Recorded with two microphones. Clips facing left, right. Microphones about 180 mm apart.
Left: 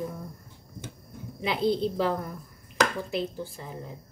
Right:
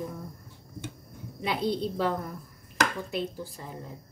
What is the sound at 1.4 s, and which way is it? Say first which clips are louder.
Speech: left 3 dB; centre (ahead or behind).